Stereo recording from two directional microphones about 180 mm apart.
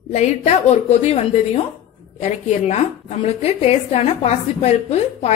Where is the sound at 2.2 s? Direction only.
40° left (ahead or behind).